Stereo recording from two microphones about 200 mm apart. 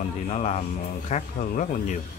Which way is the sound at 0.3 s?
35° left (ahead or behind).